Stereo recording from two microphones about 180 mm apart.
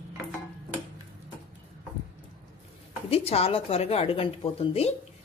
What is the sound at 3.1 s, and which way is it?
Speech, 35° left (ahead or behind).